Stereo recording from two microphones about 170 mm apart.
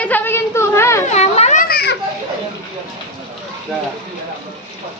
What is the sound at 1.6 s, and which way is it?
Children playing, 70° left (ahead or behind).